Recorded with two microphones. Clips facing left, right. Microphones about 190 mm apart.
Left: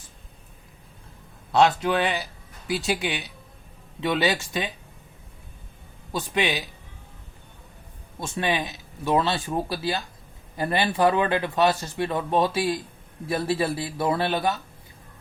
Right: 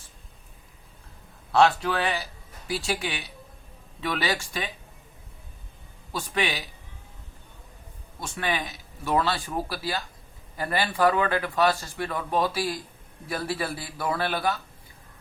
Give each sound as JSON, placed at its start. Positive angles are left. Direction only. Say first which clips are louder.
{"t": 1.5, "sound": "speech", "louder": "left 1 dB", "side_deg": 20}
{"t": 6.1, "sound": "speech", "louder": "left 3 dB", "side_deg": 20}
{"t": 8.2, "sound": "speech", "louder": "left 3 dB", "side_deg": 20}